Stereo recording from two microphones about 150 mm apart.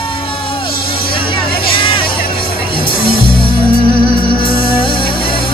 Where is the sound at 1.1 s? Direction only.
35° left (ahead or behind).